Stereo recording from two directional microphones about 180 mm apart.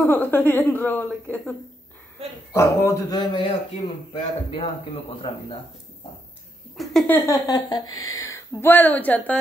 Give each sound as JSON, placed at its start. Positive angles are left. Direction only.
{"t": 0.0, "sound": "speech", "side_deg": 10}
{"t": 2.5, "sound": "a man's voice", "side_deg": 15}
{"t": 6.8, "sound": "speech", "side_deg": 0}
{"t": 7.2, "sound": "speech", "side_deg": 20}